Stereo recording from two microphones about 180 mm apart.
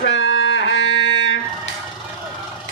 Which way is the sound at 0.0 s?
90° left.